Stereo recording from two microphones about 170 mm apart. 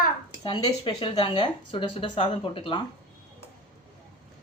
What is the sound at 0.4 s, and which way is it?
Speech, 30° left (ahead or behind).